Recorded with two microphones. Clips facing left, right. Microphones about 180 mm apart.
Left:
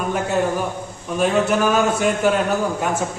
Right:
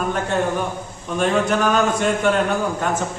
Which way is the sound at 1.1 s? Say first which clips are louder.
Left 1 dB; 5° left (ahead or behind).